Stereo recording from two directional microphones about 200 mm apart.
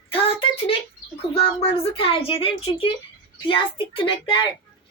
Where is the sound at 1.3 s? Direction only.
25° left (ahead or behind).